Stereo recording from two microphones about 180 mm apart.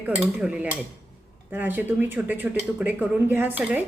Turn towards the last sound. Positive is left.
turn(degrees=-10)  # may be behind; listen again after turning